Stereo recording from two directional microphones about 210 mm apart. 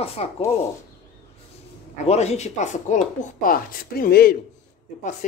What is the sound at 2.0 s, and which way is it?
A man's voice, 30° left (ahead or behind).